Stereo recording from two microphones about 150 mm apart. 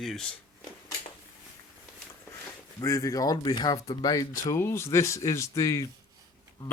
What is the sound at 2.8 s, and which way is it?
Speech, 20° left (ahead or behind).